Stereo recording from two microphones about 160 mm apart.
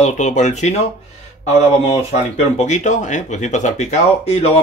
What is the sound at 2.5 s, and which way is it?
Speech, 50° left (ahead or behind).